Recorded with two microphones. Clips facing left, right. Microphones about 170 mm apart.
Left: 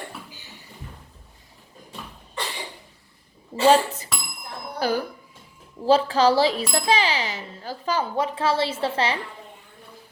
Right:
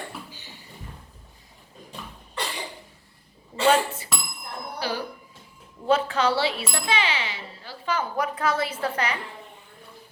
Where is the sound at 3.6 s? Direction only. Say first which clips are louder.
Left 3 dB; 35° left (ahead or behind).